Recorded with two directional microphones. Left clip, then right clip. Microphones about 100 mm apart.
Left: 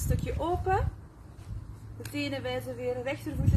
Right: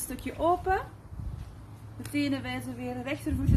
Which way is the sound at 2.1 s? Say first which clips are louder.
Right 2 dB; 50° right (ahead or behind).